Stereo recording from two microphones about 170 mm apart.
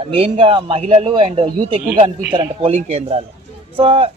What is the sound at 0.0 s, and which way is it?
Speech, 30° right (ahead or behind).